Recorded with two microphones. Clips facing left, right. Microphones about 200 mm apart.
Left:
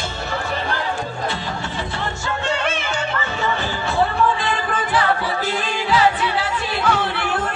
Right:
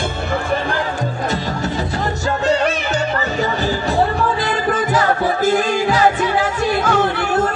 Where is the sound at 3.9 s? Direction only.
40° right (ahead or behind).